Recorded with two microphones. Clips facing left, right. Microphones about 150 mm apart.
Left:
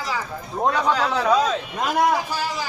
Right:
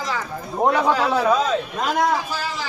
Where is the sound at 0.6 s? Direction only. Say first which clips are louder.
Right 2 dB; 15° right (ahead or behind).